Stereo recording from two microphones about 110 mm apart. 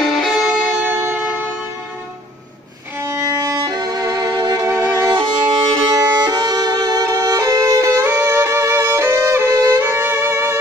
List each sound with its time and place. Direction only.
0.2 s music: 5° right (ahead or behind)
0.9 s train: 15° right (ahead or behind)
3.0 s violin: 25° right (ahead or behind)
4.6 s violin: 25° right (ahead or behind)
5.1 s music: 45° right (ahead or behind); by 10.6 s 25° right (ahead or behind)